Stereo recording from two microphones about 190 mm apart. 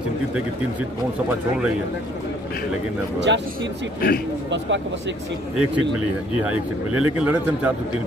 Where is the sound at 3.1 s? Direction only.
65° right (ahead or behind).